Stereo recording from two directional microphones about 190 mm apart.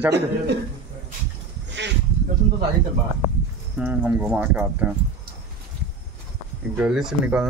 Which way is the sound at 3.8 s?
10° right (ahead or behind).